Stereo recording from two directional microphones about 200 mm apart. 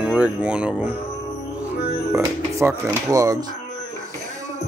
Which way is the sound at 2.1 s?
15° right (ahead or behind).